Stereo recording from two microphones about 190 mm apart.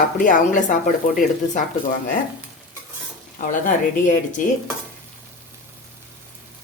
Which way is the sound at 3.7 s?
45° left (ahead or behind).